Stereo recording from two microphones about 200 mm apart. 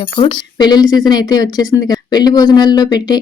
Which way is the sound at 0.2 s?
20° left (ahead or behind).